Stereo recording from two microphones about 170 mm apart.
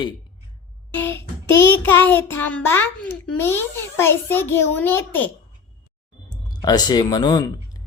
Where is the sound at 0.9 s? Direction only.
15° left (ahead or behind).